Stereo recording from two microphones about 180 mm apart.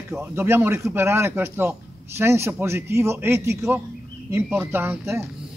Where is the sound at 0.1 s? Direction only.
10° right (ahead or behind).